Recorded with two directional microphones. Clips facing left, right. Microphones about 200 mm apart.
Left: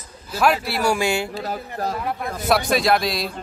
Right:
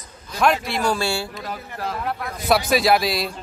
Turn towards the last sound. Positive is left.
turn(degrees=0)  # may be behind; listen again after turning